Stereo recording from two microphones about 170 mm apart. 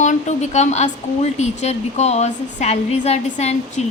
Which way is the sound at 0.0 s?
45° left (ahead or behind).